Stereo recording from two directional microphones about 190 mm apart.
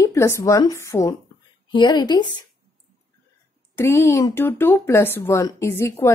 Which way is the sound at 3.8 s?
15° left (ahead or behind).